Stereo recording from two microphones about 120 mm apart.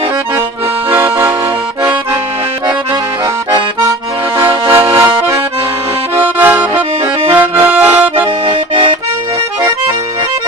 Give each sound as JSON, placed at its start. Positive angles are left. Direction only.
{"t": 0.9, "sound": "accordion", "side_deg": -15}
{"t": 4.7, "sound": "accordion", "side_deg": -20}
{"t": 6.4, "sound": "accordion", "side_deg": -15}
{"t": 7.0, "sound": "accordion", "side_deg": -50}
{"t": 7.3, "sound": "accordion", "side_deg": -15}
{"t": 8.4, "sound": "accordion", "side_deg": -45}